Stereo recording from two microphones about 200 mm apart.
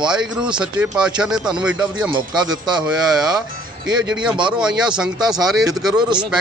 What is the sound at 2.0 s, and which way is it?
Speech, 20° right (ahead or behind).